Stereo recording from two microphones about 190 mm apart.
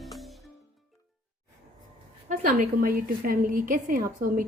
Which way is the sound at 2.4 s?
45° right (ahead or behind).